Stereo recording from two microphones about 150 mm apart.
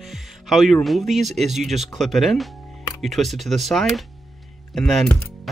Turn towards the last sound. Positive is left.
turn(degrees=0)  # may be behind; listen again after turning